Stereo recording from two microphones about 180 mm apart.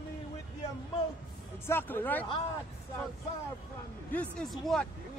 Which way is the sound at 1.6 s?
10° left (ahead or behind).